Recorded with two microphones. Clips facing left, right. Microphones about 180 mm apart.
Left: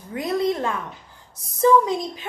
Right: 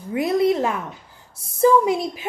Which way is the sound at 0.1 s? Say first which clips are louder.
Right 4 dB; 25° right (ahead or behind).